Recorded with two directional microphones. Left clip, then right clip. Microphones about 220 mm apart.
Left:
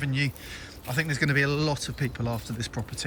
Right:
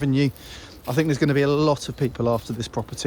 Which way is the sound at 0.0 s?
20° right (ahead or behind).